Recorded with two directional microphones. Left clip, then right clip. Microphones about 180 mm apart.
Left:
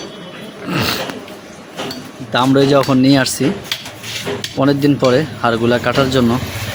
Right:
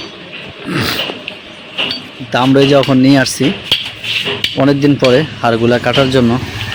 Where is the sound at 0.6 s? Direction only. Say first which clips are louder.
Right 1 dB; 10° right (ahead or behind).